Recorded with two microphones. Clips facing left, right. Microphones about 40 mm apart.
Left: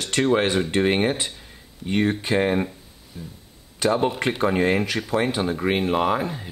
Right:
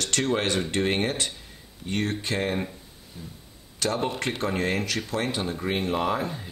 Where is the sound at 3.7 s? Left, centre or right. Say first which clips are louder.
Left 6 dB; centre.